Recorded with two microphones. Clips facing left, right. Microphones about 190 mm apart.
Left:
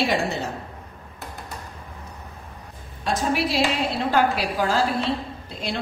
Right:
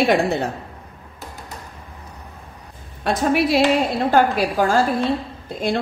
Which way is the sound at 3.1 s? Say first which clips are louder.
Right 5 dB; 55° right (ahead or behind).